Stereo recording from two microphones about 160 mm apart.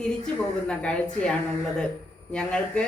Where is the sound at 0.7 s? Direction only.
5° left (ahead or behind).